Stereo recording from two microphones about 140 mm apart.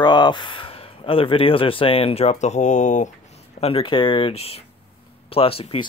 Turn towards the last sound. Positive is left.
turn(degrees=45)  # may be behind; listen again after turning